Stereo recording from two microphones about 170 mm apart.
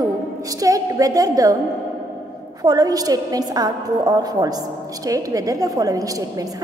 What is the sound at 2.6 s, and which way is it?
A woman's voice, 20° right (ahead or behind).